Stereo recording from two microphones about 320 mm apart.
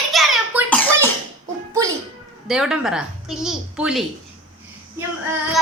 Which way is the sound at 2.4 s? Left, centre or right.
Centre.